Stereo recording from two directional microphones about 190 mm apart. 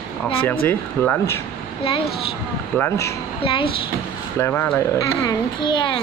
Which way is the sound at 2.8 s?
15° left (ahead or behind).